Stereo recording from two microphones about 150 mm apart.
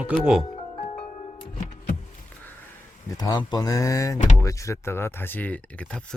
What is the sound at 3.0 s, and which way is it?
Speech, 25° left (ahead or behind).